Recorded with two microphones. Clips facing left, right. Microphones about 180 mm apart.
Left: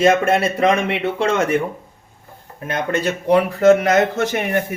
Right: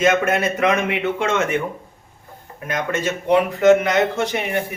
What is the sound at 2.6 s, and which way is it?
A man's voice, 30° left (ahead or behind).